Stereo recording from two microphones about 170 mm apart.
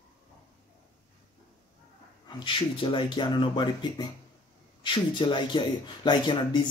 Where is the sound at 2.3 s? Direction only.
30° left (ahead or behind).